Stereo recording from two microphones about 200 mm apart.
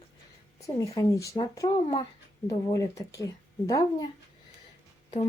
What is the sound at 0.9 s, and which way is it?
A woman's voice, 15° left (ahead or behind).